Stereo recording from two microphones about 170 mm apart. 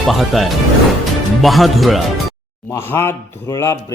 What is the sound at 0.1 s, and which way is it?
Speech, centre (ahead or behind).